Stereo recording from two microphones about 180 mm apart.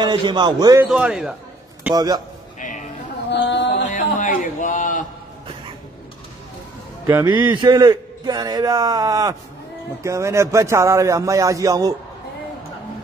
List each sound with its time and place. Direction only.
0.0 s a man's voice: 25° right (ahead or behind)
0.8 s a man's voice: centre (ahead or behind)
2.0 s a man's voice: 20° right (ahead or behind)
3.3 s a sound: 85° left
3.9 s a sound: 45° left (ahead or behind)
7.2 s a man's voice: 25° right (ahead or behind)